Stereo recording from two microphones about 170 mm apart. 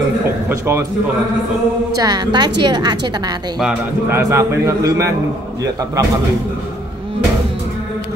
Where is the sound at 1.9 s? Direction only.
25° right (ahead or behind).